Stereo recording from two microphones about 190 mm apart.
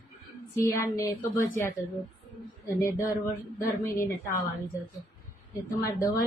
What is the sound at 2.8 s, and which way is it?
Speech, 15° left (ahead or behind).